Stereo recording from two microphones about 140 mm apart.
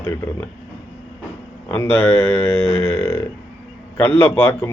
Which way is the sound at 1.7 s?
15° left (ahead or behind).